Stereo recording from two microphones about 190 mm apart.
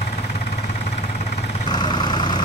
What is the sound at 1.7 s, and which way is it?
Vehicle, 25° left (ahead or behind).